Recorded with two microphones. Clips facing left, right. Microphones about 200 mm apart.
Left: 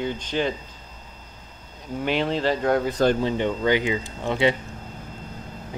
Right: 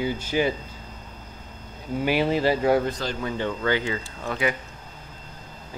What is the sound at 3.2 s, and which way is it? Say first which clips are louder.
Speech: left 4 dB; 20° left (ahead or behind).